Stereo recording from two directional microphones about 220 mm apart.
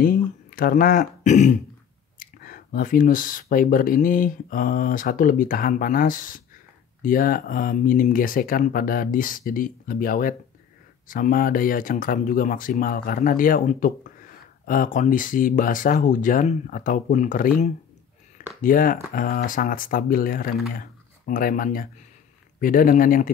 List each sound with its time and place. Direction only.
0.0 s speech: 40° left (ahead or behind)